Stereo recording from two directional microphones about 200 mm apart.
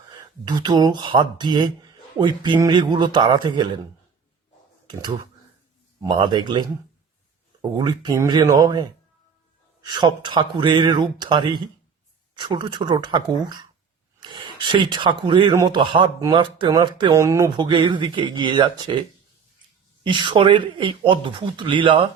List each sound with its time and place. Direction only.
0.4 s speech: 20° right (ahead or behind)
6.0 s speech: 25° right (ahead or behind)
7.8 s speech: 20° right (ahead or behind)
20.1 s speech: 25° right (ahead or behind)